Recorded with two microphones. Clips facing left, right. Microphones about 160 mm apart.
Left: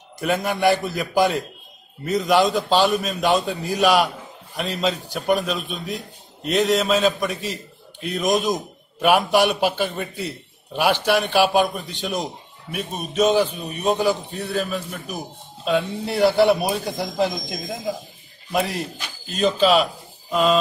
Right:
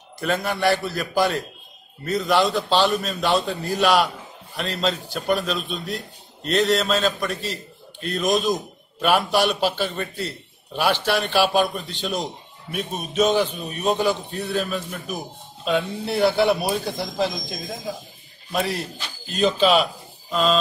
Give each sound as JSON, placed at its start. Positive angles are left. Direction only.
{"t": 0.2, "sound": "a man's voice", "side_deg": 15}
{"t": 9.0, "sound": "a man's voice", "side_deg": 10}
{"t": 18.5, "sound": "a man's voice", "side_deg": 10}